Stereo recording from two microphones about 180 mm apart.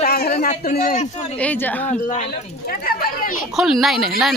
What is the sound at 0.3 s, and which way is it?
Speech, 40° left (ahead or behind).